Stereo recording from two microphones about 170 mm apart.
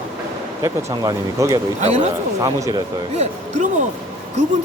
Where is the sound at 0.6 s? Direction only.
20° right (ahead or behind).